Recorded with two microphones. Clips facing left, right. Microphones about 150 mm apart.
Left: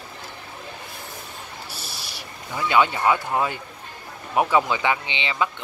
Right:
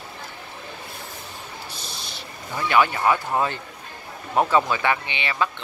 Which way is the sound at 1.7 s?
10° left (ahead or behind).